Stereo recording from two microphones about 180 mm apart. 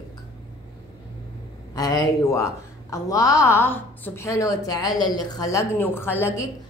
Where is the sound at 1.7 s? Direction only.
20° left (ahead or behind).